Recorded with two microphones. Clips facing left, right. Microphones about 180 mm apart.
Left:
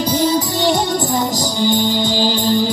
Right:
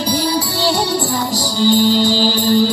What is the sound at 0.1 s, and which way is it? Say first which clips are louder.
Music: left 2 dB; 20° left (ahead or behind).